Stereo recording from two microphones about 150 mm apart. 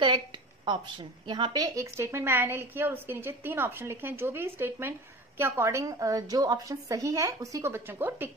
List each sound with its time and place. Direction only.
0.0 s a woman's voice: 30° right (ahead or behind); by 8.3 s 15° right (ahead or behind)